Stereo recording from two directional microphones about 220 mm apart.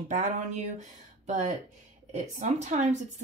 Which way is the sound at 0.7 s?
30° right (ahead or behind).